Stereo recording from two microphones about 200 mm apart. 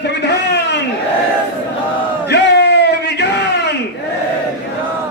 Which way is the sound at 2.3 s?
60° left (ahead or behind).